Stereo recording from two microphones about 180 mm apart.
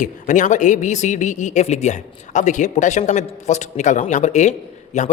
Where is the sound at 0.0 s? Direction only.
45° left (ahead or behind).